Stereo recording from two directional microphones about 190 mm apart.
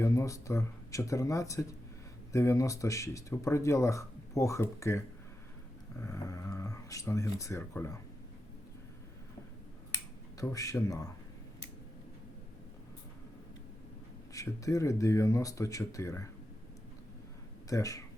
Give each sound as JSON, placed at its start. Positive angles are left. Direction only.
{"t": 0.0, "sound": "speech", "side_deg": 15}
{"t": 10.3, "sound": "speech", "side_deg": 15}
{"t": 14.3, "sound": "speech", "side_deg": 15}
{"t": 17.7, "sound": "speech", "side_deg": 15}